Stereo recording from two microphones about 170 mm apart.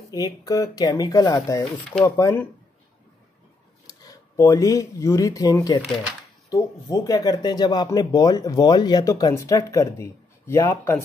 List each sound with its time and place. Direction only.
0.1 s speech: 20° left (ahead or behind)
1.6 s speech: centre (ahead or behind)
2.0 s speech: 20° left (ahead or behind)
3.8 s speech: 20° left (ahead or behind)